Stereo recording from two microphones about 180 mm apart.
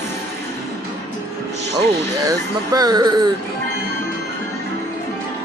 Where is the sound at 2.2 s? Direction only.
20° right (ahead or behind).